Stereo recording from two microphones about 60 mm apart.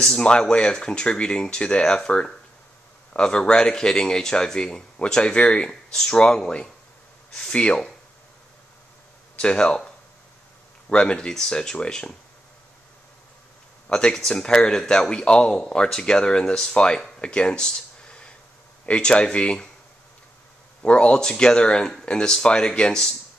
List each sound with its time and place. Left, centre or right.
0.0 s speech: centre
9.4 s speech: centre
10.9 s speech: centre
13.8 s speech: centre
17.2 s a sound: centre
18.9 s speech: centre
20.8 s speech: centre